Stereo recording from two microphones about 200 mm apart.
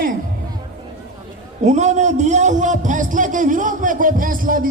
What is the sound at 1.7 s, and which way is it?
A man's voice, 35° right (ahead or behind).